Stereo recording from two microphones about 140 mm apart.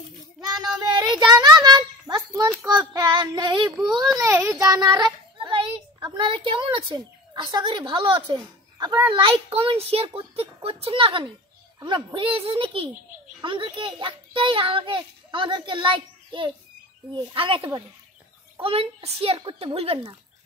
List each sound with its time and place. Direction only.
0.7 s a sound: 30° right (ahead or behind)
2.6 s child singing: 25° right (ahead or behind)
4.2 s child singing: 20° right (ahead or behind)
4.6 s a child's voice: 25° right (ahead or behind)